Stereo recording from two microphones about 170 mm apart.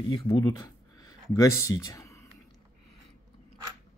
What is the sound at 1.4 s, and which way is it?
Speech, 15° left (ahead or behind).